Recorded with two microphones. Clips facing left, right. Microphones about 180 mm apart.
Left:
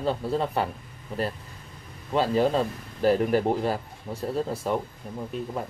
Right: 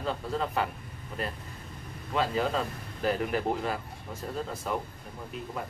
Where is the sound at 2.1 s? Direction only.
30° left (ahead or behind).